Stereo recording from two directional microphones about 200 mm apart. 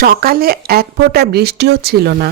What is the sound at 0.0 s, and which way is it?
Speech, 50° right (ahead or behind).